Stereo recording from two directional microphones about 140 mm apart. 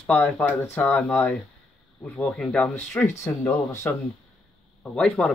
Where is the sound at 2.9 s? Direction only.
20° left (ahead or behind).